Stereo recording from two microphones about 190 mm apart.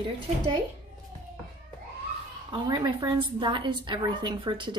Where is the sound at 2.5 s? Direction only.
20° right (ahead or behind).